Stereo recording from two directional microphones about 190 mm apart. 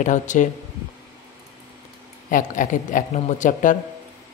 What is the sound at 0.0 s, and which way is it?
Speech, 40° left (ahead or behind).